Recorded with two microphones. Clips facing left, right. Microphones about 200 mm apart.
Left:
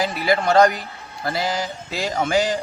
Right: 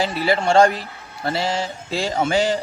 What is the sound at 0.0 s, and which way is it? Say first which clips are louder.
A man's voice: even; 30° right (ahead or behind).